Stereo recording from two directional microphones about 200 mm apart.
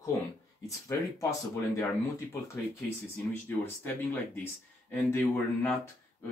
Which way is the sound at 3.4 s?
10° left (ahead or behind).